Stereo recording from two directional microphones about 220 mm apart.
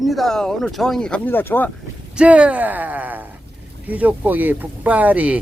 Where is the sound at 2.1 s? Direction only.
5° right (ahead or behind).